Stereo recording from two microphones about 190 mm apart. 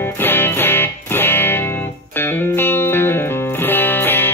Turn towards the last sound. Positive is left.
turn(degrees=10)  # may be behind; listen again after turning